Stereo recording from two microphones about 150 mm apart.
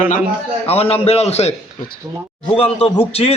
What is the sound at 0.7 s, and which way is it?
Speech, 40° left (ahead or behind).